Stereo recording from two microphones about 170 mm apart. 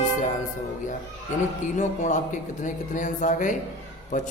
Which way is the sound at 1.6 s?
45° left (ahead or behind).